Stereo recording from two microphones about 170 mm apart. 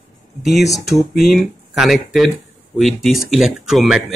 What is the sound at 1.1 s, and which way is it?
Speech, centre (ahead or behind).